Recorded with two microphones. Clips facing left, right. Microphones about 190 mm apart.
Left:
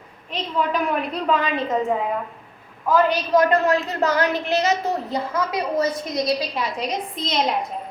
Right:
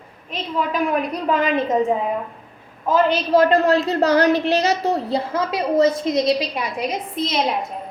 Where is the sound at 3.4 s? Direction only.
30° right (ahead or behind); by 7.4 s 5° right (ahead or behind).